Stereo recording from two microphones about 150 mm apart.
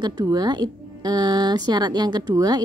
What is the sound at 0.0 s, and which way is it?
A woman's voice, 25° right (ahead or behind).